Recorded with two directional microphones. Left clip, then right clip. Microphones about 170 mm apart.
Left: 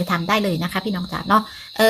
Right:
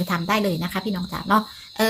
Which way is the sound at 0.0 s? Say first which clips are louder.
Left 2 dB; 20° left (ahead or behind).